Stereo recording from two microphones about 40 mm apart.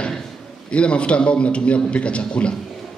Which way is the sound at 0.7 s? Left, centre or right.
Left.